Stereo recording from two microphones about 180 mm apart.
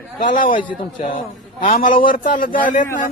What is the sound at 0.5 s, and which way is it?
Speech, 30° left (ahead or behind).